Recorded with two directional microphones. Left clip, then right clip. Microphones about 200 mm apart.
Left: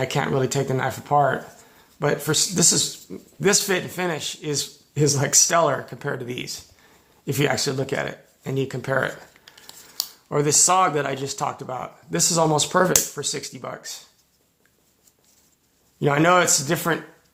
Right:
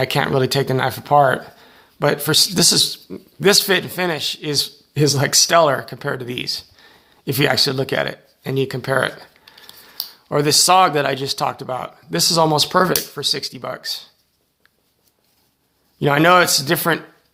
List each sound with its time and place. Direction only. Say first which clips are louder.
0.0 s speech: right 5 dB; 30° right (ahead or behind)
10.2 s speech: right 5 dB; 30° right (ahead or behind)
16.0 s speech: right 5 dB; 30° right (ahead or behind)